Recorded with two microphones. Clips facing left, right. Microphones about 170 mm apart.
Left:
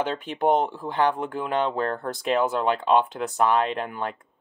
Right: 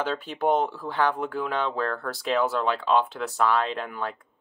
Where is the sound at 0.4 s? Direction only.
20° left (ahead or behind).